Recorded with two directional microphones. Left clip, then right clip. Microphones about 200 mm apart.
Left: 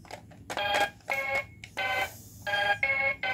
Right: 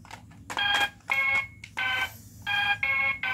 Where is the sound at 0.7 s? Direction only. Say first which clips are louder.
Right 2 dB; 15° left (ahead or behind).